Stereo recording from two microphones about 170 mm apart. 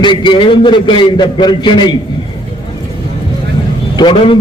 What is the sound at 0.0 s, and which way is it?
A man's voice, 25° left (ahead or behind).